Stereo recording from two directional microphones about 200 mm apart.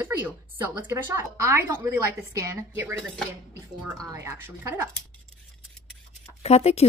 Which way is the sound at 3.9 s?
15° right (ahead or behind).